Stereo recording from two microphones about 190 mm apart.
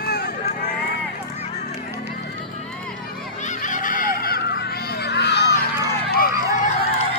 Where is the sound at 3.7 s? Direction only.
45° left (ahead or behind).